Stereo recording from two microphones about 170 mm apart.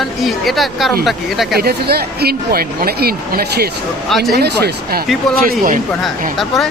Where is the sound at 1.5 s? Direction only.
70° right (ahead or behind).